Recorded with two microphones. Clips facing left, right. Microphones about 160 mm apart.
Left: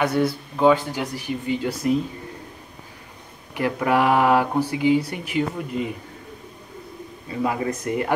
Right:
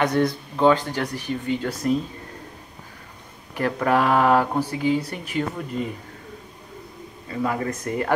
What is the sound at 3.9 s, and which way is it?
Speech, 10° left (ahead or behind).